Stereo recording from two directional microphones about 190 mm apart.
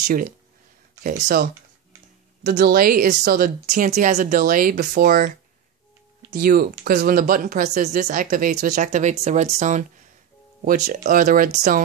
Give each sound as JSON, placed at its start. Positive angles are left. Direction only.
{"t": 0.0, "sound": "a woman's voice", "side_deg": -45}
{"t": 6.3, "sound": "a woman's voice", "side_deg": -50}